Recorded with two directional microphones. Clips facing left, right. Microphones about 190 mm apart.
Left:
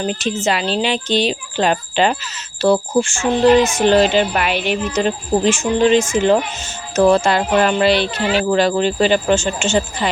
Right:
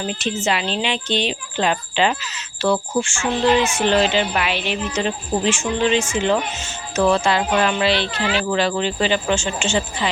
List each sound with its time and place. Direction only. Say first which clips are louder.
0.0 s a woman's voice: left 4 dB; 40° left (ahead or behind)